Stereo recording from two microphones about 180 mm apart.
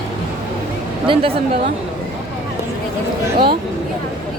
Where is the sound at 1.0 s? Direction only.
30° right (ahead or behind).